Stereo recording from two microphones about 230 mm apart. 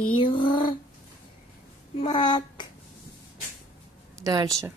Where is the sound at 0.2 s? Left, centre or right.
Left.